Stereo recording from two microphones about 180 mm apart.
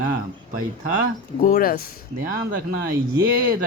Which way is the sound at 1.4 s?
50° left (ahead or behind).